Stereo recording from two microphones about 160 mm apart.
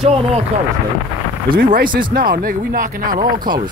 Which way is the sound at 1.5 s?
60° right (ahead or behind).